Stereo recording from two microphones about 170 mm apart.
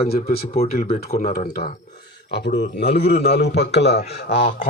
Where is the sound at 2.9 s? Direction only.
75° left (ahead or behind).